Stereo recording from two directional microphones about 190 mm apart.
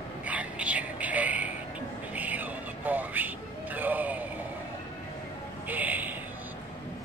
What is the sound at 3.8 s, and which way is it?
Speech, 10° right (ahead or behind).